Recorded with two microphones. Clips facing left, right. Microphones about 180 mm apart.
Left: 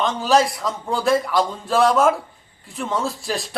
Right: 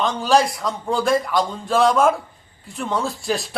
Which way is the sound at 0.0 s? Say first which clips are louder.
Even; centre (ahead or behind).